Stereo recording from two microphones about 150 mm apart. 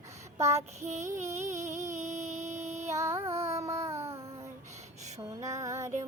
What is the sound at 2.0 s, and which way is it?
Music, 50° right (ahead or behind).